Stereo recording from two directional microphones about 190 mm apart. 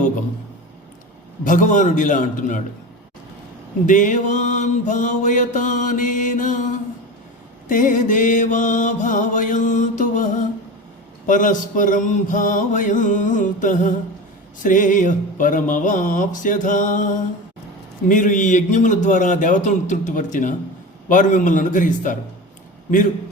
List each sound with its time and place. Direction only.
1.5 s mantra: 40° left (ahead or behind)
3.8 s mantra: 45° left (ahead or behind)
7.7 s mantra: 45° left (ahead or behind)
18.1 s mantra: 40° left (ahead or behind)